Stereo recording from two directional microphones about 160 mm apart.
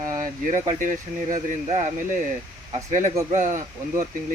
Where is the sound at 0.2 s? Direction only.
55° right (ahead or behind).